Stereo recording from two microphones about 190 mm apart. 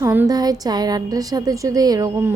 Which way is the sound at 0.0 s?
10° right (ahead or behind).